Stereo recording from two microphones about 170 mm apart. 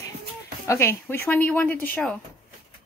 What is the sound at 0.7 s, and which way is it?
Speech, 15° left (ahead or behind).